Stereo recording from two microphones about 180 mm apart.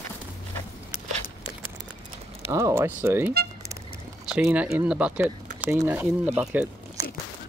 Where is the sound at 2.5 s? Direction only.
15° right (ahead or behind).